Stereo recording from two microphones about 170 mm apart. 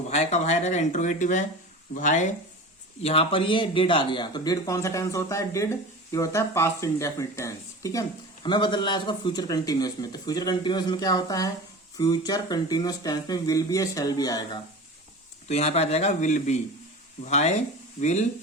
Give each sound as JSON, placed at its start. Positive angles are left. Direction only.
{"t": 0.1, "sound": "speech", "side_deg": 40}
{"t": 3.0, "sound": "speech", "side_deg": 35}
{"t": 15.4, "sound": "speech", "side_deg": 40}